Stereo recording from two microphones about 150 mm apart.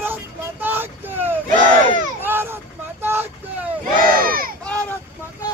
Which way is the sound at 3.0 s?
15° right (ahead or behind).